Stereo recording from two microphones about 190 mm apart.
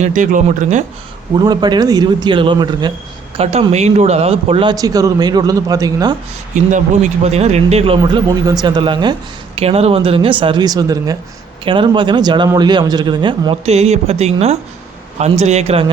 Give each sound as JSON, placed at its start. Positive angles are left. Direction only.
{"t": 0.0, "sound": "a man's voice", "side_deg": -40}
{"t": 1.4, "sound": "a man's voice", "side_deg": -20}
{"t": 6.5, "sound": "a man's voice", "side_deg": -40}